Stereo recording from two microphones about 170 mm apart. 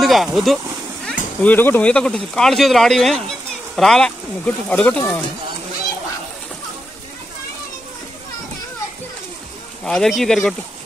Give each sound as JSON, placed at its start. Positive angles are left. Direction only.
{"t": 0.0, "sound": "speech", "side_deg": 0}
{"t": 1.4, "sound": "speech", "side_deg": 10}
{"t": 9.8, "sound": "speech", "side_deg": 5}